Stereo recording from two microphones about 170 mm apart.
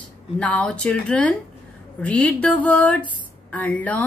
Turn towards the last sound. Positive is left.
turn(degrees=10)  # may be behind; listen again after turning